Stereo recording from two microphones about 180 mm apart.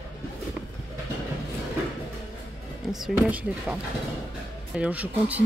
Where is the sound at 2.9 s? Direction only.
5° right (ahead or behind).